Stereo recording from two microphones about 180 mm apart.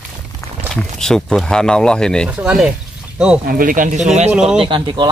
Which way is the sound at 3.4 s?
50° right (ahead or behind).